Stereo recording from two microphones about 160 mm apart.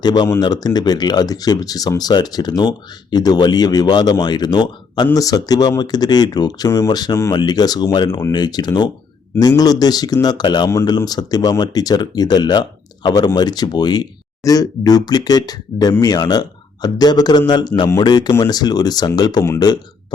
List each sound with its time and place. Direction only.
0.0 s speech: 25° left (ahead or behind)